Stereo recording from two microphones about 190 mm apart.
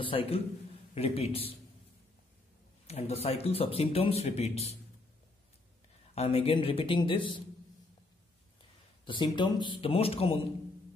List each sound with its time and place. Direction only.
0.0 s a man's voice: 30° left (ahead or behind)
2.9 s speech: 35° left (ahead or behind)
6.1 s a man's voice: 30° left (ahead or behind)
9.0 s a man's voice: 25° left (ahead or behind)